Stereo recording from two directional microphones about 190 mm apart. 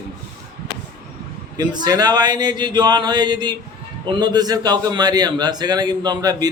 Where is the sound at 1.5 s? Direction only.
20° right (ahead or behind).